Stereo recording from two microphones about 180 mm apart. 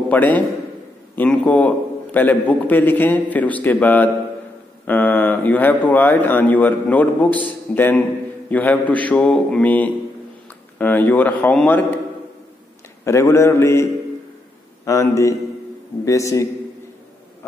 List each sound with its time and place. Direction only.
0.1 s a man's voice: 10° left (ahead or behind)
13.0 s speech: 15° left (ahead or behind)
14.9 s speech: 15° left (ahead or behind)